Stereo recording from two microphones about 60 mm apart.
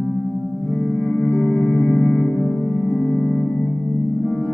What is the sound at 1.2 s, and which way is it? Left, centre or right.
Music, left.